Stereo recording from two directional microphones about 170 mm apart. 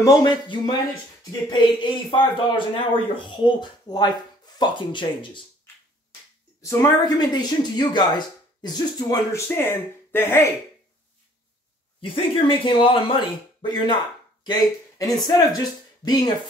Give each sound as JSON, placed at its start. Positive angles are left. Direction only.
{"t": 0.0, "sound": "speech", "side_deg": 20}
{"t": 6.6, "sound": "speech", "side_deg": 15}
{"t": 12.0, "sound": "speech", "side_deg": 30}